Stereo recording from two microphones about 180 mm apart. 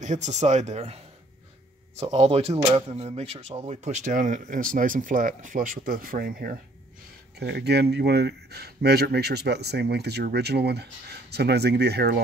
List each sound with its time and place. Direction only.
0.0 s speech: 40° right (ahead or behind)
2.0 s speech: 35° right (ahead or behind); by 6.5 s 55° right (ahead or behind)
7.3 s speech: 65° right (ahead or behind)